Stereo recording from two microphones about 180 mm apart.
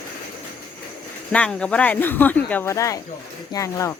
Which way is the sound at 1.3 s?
5° left (ahead or behind).